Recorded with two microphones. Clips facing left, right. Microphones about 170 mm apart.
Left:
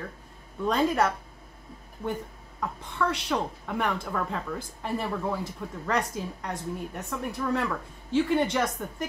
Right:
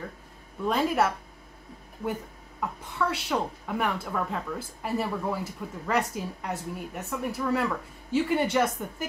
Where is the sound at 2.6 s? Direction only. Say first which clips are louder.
Even; 5° right (ahead or behind).